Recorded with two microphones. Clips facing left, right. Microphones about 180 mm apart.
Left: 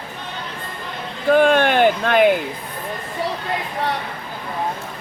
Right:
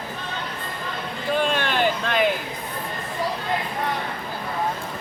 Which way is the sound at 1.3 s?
55° left (ahead or behind).